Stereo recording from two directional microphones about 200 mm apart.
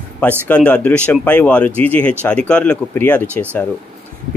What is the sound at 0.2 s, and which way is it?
Speech, 5° left (ahead or behind).